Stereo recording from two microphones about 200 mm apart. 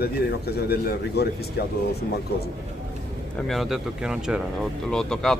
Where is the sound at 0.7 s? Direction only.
50° left (ahead or behind).